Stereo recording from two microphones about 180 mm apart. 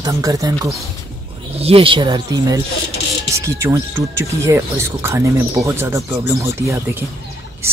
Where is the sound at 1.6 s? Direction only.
30° right (ahead or behind).